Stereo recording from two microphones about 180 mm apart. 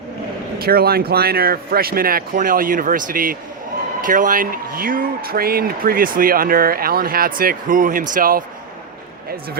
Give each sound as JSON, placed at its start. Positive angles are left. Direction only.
{"t": 0.6, "sound": "speech", "side_deg": -55}